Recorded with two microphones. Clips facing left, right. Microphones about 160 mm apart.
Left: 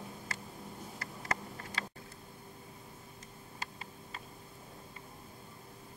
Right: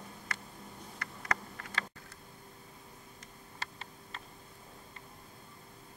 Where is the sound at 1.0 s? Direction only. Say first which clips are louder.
Right 2 dB; 30° left (ahead or behind).